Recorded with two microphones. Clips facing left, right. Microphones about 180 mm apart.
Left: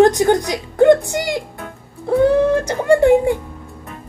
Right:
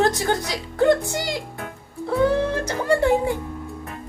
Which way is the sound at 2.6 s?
20° left (ahead or behind).